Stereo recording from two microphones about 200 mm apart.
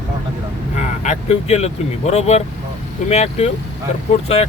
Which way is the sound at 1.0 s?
35° left (ahead or behind).